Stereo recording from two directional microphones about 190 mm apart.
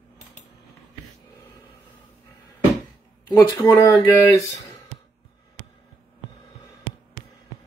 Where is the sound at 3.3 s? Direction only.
15° left (ahead or behind).